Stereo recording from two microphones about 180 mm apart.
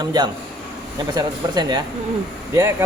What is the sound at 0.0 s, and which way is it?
Speech, 20° right (ahead or behind).